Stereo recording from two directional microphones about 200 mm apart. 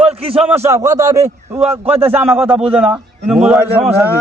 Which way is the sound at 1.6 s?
30° right (ahead or behind).